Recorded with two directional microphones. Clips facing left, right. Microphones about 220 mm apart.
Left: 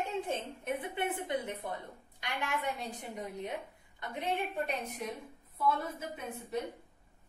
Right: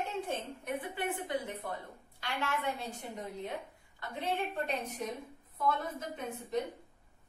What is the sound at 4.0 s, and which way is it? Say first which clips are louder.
A woman's voice: even; 20° left (ahead or behind).